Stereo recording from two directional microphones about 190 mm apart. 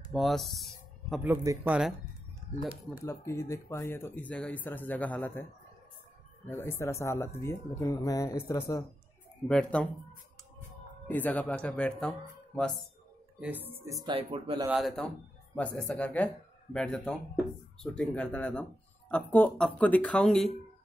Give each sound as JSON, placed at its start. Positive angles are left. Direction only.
{"t": 0.1, "sound": "speech", "side_deg": 0}
{"t": 3.1, "sound": "a man's voice", "side_deg": 15}
{"t": 9.5, "sound": "speech", "side_deg": 5}
{"t": 11.1, "sound": "speech", "side_deg": 10}
{"t": 13.4, "sound": "speech", "side_deg": -10}
{"t": 14.0, "sound": "speech", "side_deg": -25}
{"t": 14.7, "sound": "speech", "side_deg": 0}